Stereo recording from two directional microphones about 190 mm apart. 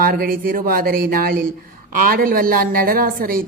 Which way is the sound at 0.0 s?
50° right (ahead or behind).